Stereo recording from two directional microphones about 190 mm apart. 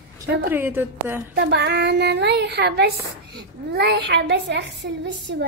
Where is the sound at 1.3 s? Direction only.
60° right (ahead or behind).